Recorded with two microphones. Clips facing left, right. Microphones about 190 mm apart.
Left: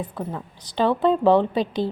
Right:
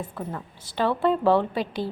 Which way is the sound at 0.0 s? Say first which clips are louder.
Left 3 dB; 10° left (ahead or behind).